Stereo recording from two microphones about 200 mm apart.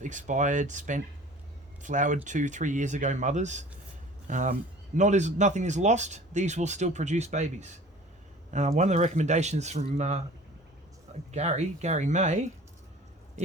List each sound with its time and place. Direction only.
0.0 s speech: 40° right (ahead or behind)
11.3 s speech: 35° right (ahead or behind)